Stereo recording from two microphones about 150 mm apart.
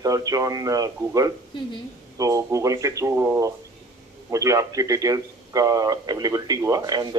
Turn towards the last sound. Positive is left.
turn(degrees=-25)  # may be behind; listen again after turning